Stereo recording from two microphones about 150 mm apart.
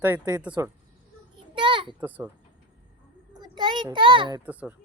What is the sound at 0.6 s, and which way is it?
Speech, 20° right (ahead or behind).